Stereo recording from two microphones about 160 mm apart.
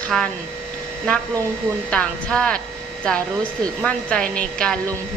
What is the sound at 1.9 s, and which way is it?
A woman's voice, 5° left (ahead or behind).